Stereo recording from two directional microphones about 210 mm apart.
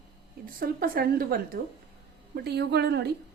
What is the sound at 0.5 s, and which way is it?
A woman's voice, 45° right (ahead or behind).